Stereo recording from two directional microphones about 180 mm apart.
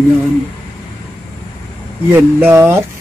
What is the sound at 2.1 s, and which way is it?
Mantra, 10° right (ahead or behind).